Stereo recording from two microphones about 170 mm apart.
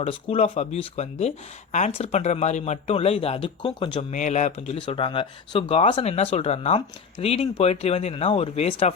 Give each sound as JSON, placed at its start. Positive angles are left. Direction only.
{"t": 0.0, "sound": "speech", "side_deg": 35}
{"t": 4.1, "sound": "speech", "side_deg": 45}